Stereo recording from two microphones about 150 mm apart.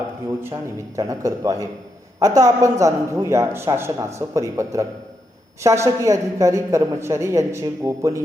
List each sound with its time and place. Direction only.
0.4 s a woman's voice: 20° right (ahead or behind)